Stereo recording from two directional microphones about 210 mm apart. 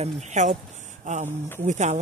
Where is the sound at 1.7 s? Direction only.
35° right (ahead or behind).